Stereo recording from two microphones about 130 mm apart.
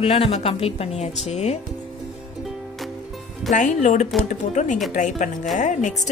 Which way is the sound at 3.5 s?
70° left (ahead or behind).